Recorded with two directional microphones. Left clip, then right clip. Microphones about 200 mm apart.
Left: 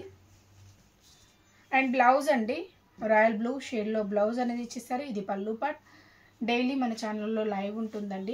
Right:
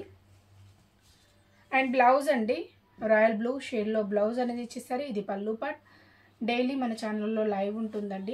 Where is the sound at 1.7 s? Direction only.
15° right (ahead or behind).